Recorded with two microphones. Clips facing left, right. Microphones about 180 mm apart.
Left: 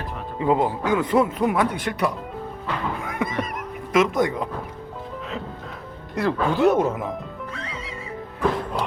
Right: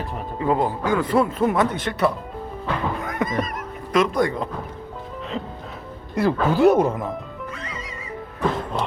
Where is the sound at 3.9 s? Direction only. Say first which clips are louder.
Even; 20° left (ahead or behind).